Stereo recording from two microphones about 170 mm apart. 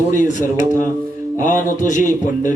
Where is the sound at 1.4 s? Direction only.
50° left (ahead or behind).